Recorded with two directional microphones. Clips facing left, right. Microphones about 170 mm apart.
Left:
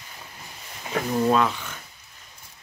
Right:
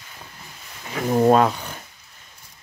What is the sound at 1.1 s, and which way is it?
Speech, 45° right (ahead or behind).